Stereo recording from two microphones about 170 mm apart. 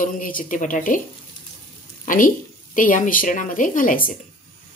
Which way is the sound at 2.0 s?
50° left (ahead or behind).